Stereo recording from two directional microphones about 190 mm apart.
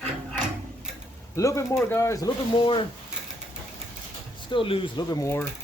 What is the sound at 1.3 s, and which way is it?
Speech, 15° left (ahead or behind).